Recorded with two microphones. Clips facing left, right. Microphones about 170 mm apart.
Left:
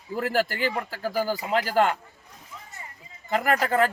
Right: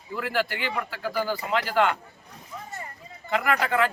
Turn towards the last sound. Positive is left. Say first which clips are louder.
# left 2 dB
turn(degrees=40)  # may be behind; listen again after turning